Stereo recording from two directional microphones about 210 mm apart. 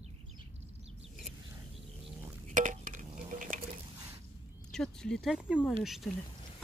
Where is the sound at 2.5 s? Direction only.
40° right (ahead or behind).